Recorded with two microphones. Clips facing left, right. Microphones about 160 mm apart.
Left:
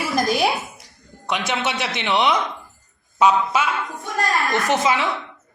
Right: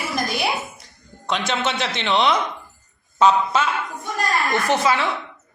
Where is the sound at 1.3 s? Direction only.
15° left (ahead or behind).